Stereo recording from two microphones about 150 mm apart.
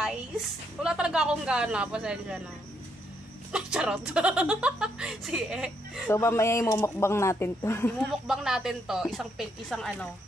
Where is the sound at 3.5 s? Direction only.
5° right (ahead or behind).